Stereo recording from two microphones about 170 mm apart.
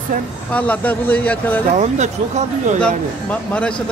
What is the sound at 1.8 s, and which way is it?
Speech, 40° right (ahead or behind).